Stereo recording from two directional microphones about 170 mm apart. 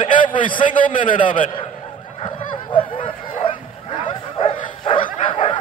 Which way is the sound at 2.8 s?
30° left (ahead or behind).